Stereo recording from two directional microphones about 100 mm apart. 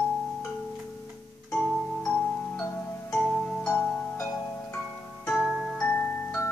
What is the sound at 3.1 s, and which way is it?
Music, 10° left (ahead or behind).